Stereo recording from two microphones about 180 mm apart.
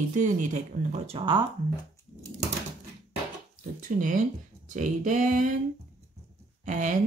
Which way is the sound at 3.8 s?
45° right (ahead or behind).